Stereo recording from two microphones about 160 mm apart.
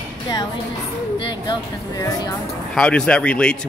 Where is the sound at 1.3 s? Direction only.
25° left (ahead or behind).